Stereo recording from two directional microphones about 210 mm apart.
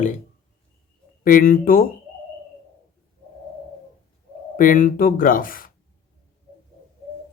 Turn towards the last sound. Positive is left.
turn(degrees=40)  # may be behind; listen again after turning